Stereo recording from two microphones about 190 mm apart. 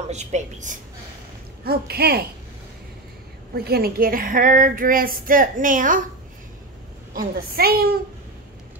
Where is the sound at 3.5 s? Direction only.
55° right (ahead or behind).